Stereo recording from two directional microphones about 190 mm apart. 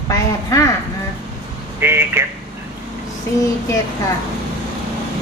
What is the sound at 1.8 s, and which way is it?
Speech, 10° right (ahead or behind).